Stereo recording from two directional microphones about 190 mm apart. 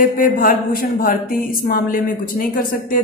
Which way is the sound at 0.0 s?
50° left (ahead or behind).